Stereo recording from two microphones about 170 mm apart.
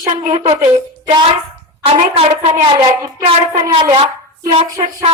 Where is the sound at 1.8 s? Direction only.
35° right (ahead or behind).